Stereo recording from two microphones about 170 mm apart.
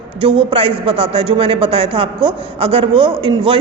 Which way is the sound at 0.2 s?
30° right (ahead or behind).